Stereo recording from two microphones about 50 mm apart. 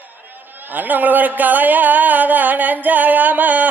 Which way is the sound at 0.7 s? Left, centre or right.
Right.